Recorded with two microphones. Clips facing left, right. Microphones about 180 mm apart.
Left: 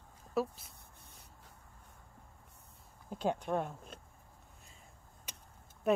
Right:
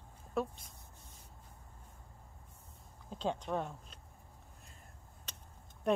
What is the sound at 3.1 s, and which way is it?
Speech, 10° left (ahead or behind).